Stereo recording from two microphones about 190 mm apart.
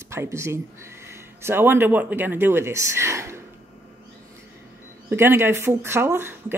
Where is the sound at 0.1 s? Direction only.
15° right (ahead or behind).